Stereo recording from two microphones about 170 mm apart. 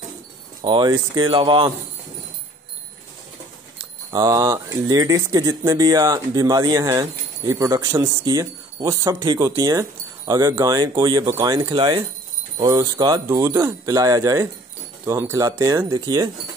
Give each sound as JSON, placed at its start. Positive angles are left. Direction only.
{"t": 0.7, "sound": "speech", "side_deg": -25}
{"t": 3.7, "sound": "speech", "side_deg": -20}